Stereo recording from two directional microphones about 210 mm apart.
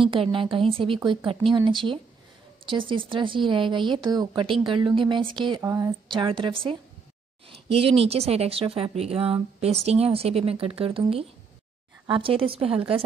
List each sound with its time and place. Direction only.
0.0 s speech: 25° right (ahead or behind)